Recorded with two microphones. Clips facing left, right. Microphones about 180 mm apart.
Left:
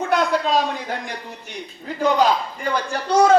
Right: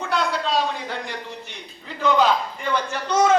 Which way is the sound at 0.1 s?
45° left (ahead or behind).